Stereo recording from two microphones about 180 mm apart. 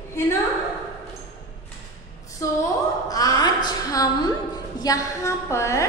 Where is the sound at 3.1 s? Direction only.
20° left (ahead or behind).